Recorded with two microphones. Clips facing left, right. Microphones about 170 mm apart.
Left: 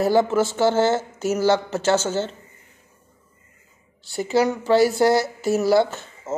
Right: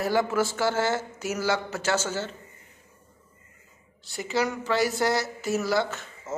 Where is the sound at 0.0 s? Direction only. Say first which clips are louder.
Left 6 dB; 25° left (ahead or behind).